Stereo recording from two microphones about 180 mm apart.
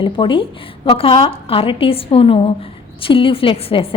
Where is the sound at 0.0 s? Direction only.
30° left (ahead or behind).